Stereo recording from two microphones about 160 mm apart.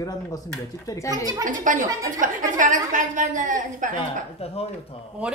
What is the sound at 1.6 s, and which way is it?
A woman's voice, 55° right (ahead or behind).